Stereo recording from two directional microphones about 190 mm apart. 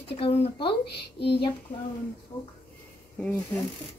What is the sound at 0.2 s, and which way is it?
Speech, 30° left (ahead or behind).